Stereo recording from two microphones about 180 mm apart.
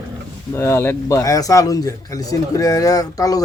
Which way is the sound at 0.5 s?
15° left (ahead or behind).